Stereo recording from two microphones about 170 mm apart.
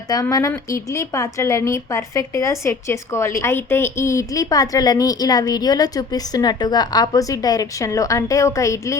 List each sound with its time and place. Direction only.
0.1 s a woman's voice: 20° left (ahead or behind)